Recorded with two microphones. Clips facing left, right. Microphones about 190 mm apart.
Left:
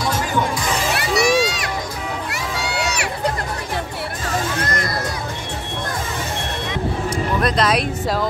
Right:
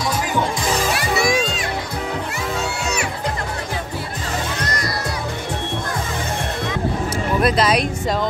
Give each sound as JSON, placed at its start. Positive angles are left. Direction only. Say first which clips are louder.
{"t": 0.9, "sound": "music", "louder": "left 2 dB", "side_deg": 70}
{"t": 7.4, "sound": "a woman's voice", "louder": "right 2 dB", "side_deg": 0}